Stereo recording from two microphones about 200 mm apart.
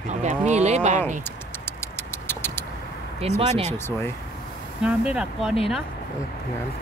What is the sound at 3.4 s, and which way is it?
Speech, 30° right (ahead or behind).